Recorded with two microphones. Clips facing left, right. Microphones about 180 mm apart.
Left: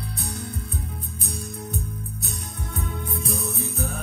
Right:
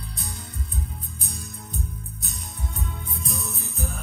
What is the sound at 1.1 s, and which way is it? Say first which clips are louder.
Music: left 8 dB; 65° left (ahead or behind).